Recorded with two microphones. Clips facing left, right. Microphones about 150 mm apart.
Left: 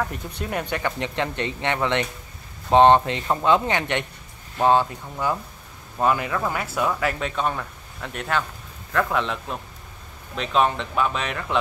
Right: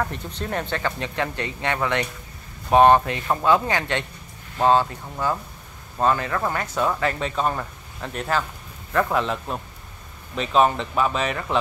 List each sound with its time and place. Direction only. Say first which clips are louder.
0.1 s speech: even; 10° left (ahead or behind)
5.9 s speech: even; 10° left (ahead or behind)